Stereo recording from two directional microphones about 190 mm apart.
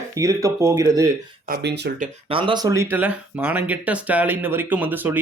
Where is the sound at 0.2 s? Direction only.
15° right (ahead or behind).